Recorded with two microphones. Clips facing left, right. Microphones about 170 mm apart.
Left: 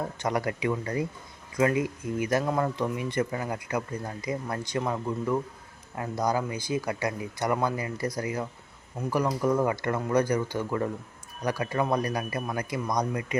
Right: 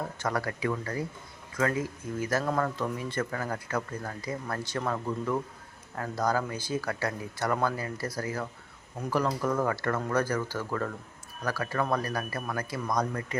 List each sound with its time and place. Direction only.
0.2 s speech: 20° left (ahead or behind)